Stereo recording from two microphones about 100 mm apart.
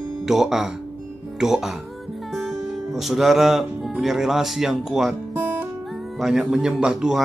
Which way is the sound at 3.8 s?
5° right (ahead or behind).